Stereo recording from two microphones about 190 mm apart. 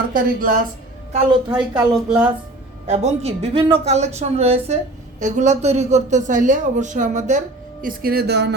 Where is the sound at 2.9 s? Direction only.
35° right (ahead or behind).